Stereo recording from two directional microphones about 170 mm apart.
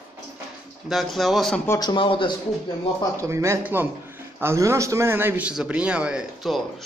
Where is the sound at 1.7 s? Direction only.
25° left (ahead or behind).